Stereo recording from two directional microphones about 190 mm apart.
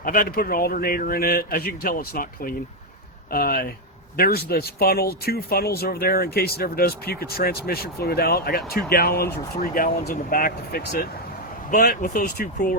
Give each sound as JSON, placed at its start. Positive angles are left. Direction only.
{"t": 0.0, "sound": "speech", "side_deg": 50}